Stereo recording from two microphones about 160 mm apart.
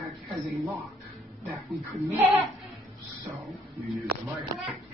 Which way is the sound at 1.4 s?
20° right (ahead or behind).